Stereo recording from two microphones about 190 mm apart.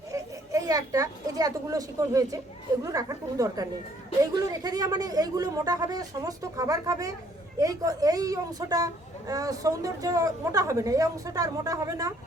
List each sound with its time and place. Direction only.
0.1 s speech: 15° right (ahead or behind)